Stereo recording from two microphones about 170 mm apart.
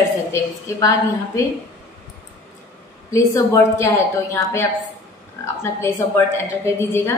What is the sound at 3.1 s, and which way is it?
A woman's voice, 20° left (ahead or behind).